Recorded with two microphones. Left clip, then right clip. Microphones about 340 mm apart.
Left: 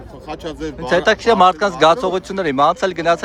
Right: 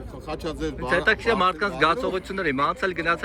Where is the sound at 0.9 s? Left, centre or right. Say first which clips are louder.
Left 9 dB; centre.